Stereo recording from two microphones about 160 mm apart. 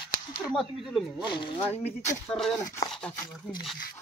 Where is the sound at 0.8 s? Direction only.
5° right (ahead or behind).